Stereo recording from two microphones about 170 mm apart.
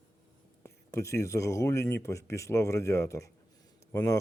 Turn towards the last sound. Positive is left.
turn(degrees=15)  # may be behind; listen again after turning